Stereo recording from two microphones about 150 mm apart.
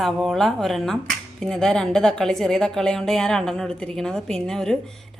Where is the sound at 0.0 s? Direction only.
Centre (ahead or behind).